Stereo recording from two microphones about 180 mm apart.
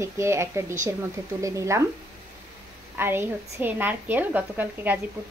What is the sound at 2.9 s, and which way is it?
A woman's voice, 10° right (ahead or behind).